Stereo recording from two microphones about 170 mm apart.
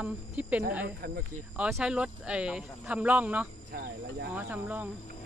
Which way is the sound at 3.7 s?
65° right (ahead or behind).